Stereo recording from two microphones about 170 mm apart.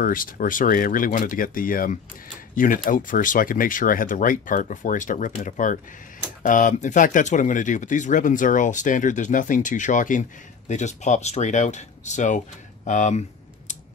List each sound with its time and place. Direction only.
0.0 s speech: 55° left (ahead or behind)